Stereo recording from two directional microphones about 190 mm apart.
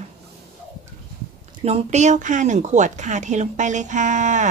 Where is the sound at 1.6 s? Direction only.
35° right (ahead or behind).